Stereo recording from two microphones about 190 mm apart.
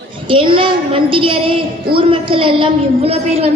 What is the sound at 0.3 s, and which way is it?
A woman's voice, 25° right (ahead or behind).